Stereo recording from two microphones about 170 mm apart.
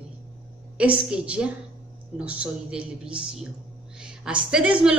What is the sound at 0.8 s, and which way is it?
A woman's voice, 5° right (ahead or behind).